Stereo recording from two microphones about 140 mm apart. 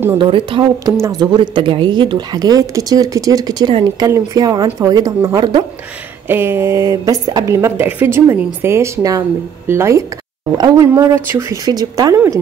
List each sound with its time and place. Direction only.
0.2 s a woman's voice: 35° right (ahead or behind)
6.2 s a woman's voice: 15° right (ahead or behind)